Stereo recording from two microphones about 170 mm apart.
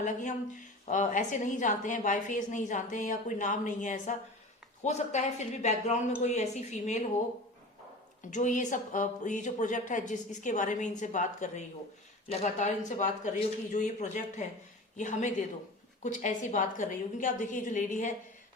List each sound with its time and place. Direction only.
0.0 s a woman's voice: 45° left (ahead or behind)
8.3 s a woman's voice: 45° left (ahead or behind)